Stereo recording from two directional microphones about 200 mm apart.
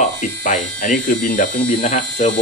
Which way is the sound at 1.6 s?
35° left (ahead or behind).